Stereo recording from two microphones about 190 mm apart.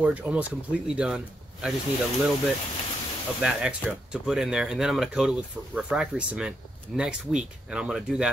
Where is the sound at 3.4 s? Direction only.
5° right (ahead or behind).